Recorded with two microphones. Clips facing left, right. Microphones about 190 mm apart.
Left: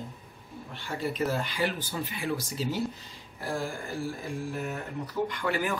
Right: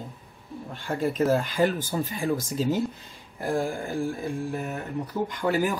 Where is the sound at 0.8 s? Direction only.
50° right (ahead or behind).